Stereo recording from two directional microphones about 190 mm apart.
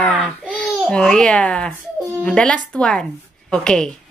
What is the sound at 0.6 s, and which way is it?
Speech, centre (ahead or behind).